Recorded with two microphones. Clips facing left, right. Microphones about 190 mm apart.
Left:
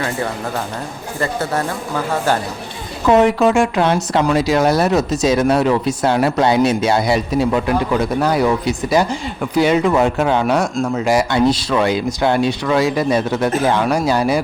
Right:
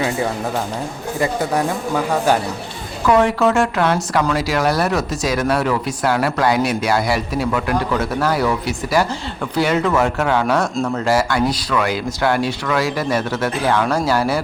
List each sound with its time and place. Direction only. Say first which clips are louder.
1.2 s speech: right 1 dB; 15° right (ahead or behind)
3.1 s speech: left 2 dB; 20° left (ahead or behind)